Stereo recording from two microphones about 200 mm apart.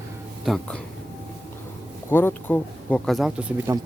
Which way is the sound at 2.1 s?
10° left (ahead or behind).